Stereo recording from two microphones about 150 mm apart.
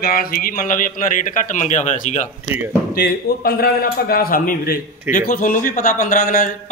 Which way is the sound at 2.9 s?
90° left.